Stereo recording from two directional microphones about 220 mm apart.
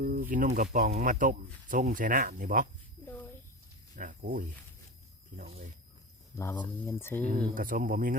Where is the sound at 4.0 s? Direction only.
35° right (ahead or behind).